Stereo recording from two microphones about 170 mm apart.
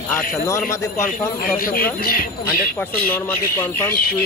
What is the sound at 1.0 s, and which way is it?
Speech, 55° left (ahead or behind).